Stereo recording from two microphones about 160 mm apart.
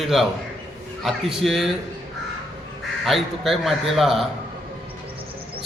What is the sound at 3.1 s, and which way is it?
A man's voice, centre (ahead or behind).